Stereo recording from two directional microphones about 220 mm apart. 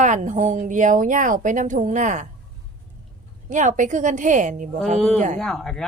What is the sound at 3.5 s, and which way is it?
Speech, 35° right (ahead or behind).